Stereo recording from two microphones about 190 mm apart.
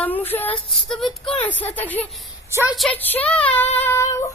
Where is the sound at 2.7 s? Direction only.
5° left (ahead or behind).